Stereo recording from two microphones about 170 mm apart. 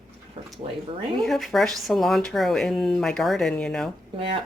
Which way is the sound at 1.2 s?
Centre (ahead or behind).